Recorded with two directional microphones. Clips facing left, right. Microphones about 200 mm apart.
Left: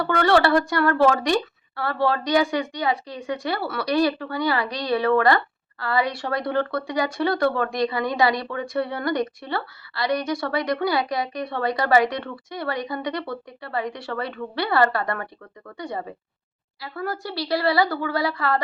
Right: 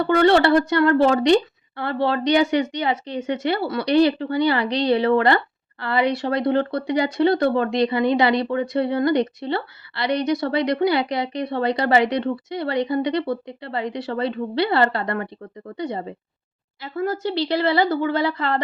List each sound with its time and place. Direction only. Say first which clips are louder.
0.0 s speech: right 3 dB; 20° right (ahead or behind)